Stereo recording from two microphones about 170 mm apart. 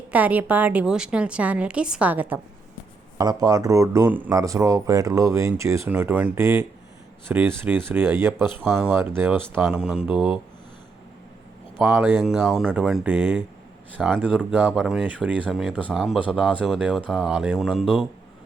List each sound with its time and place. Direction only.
0.1 s a woman's voice: 10° right (ahead or behind)
3.2 s a woman's voice: 20° right (ahead or behind)
8.6 s a woman's voice: centre (ahead or behind)
11.8 s a woman's voice: 10° right (ahead or behind)
12.2 s a woman's voice: centre (ahead or behind)